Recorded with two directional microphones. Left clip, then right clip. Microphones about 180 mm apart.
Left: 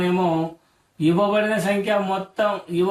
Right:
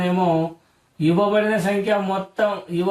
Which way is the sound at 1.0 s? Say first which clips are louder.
Right 1 dB; 15° right (ahead or behind).